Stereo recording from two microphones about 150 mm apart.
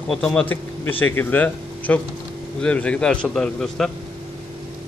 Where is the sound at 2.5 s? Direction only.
5° left (ahead or behind).